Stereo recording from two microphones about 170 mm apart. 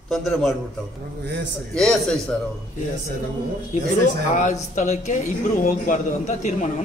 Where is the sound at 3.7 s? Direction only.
45° left (ahead or behind).